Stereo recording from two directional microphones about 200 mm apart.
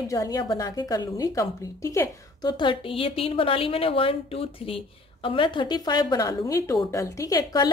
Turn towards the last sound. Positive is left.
turn(degrees=15)  # may be behind; listen again after turning